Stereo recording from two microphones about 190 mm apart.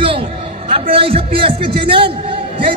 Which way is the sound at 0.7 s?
30° right (ahead or behind).